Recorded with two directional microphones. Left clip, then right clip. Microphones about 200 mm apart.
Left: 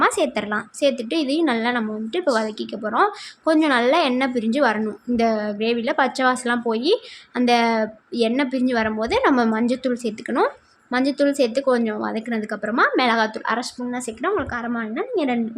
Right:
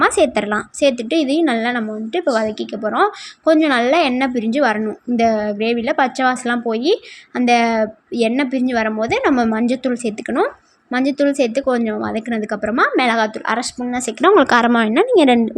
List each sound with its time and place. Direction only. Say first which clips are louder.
0.0 s a woman's voice: right 5 dB; 20° right (ahead or behind)
14.2 s speech: right 13 dB; 40° right (ahead or behind)